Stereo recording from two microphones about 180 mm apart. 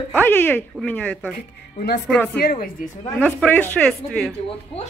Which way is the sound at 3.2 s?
10° left (ahead or behind).